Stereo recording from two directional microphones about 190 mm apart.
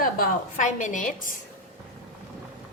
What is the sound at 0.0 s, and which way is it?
A woman's voice, 45° left (ahead or behind).